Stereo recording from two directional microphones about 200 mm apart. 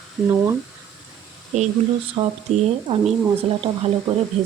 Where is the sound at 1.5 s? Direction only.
35° right (ahead or behind).